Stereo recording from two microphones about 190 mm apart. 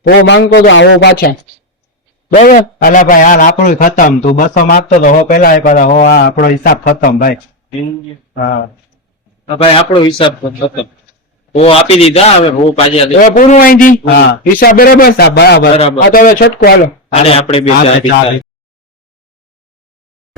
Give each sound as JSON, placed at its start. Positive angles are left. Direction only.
{"t": 0.0, "sound": "speech", "side_deg": 60}
{"t": 0.7, "sound": "speech", "side_deg": 80}
{"t": 2.3, "sound": "a man's voice", "side_deg": 45}
{"t": 9.6, "sound": "speech", "side_deg": 30}
{"t": 11.5, "sound": "a man's voice", "side_deg": 30}
{"t": 16.8, "sound": "a man's voice", "side_deg": 35}